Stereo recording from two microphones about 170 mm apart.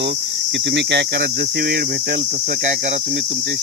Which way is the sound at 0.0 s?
90° right.